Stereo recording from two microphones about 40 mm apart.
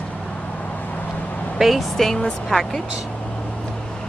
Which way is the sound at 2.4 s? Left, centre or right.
Centre.